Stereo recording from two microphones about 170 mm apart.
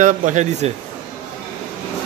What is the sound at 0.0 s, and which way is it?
Speech, 45° right (ahead or behind).